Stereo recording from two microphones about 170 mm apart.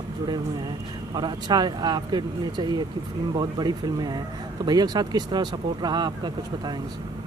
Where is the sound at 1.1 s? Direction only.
25° right (ahead or behind).